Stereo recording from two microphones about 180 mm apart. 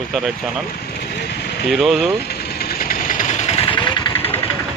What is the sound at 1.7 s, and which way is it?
Speech, centre (ahead or behind).